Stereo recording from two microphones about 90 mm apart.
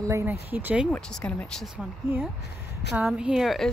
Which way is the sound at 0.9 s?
10° left (ahead or behind).